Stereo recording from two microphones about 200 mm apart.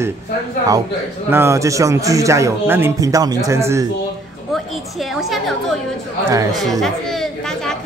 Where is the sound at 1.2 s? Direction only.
10° right (ahead or behind).